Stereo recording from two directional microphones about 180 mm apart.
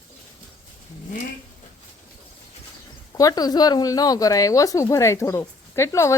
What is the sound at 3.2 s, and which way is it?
A woman's voice, 20° left (ahead or behind).